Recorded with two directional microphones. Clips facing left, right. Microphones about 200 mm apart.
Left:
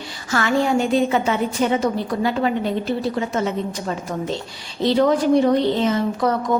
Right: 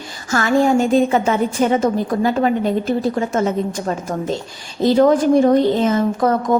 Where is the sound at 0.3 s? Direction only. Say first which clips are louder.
Right 4 dB; 45° right (ahead or behind).